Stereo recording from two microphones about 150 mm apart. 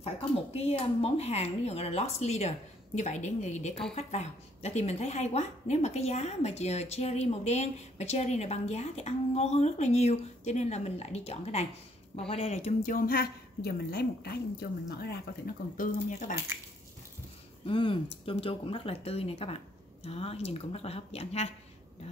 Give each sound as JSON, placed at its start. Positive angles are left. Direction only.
{"t": 0.5, "sound": "a woman's voice", "side_deg": 45}
{"t": 17.6, "sound": "a woman's voice", "side_deg": 35}